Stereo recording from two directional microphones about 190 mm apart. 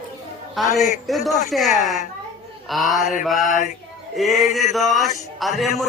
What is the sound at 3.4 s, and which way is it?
Male singing, 40° left (ahead or behind).